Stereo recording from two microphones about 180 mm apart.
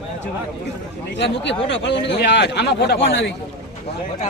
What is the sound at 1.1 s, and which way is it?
A man's voice, 80° left.